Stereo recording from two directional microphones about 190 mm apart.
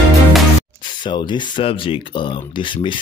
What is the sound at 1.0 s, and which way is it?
Speech, 25° left (ahead or behind).